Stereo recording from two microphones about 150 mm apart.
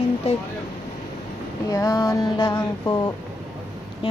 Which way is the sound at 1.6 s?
25° left (ahead or behind).